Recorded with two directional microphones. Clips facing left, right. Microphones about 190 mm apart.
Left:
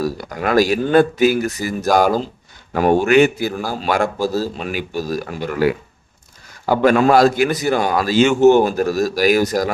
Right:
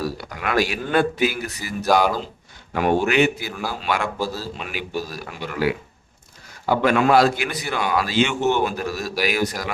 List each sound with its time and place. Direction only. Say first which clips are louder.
0.0 s a man's voice: left 6 dB; 45° left (ahead or behind)